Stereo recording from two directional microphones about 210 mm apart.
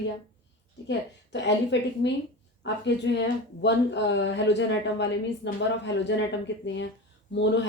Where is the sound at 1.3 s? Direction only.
55° left (ahead or behind).